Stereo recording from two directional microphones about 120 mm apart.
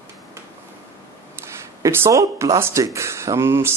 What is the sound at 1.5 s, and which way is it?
Speech, 20° right (ahead or behind).